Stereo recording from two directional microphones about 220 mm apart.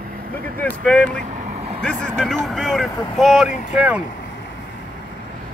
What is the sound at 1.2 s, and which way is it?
Vehicle, 30° right (ahead or behind).